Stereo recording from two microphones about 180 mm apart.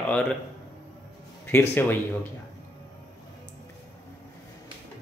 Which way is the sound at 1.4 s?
10° left (ahead or behind).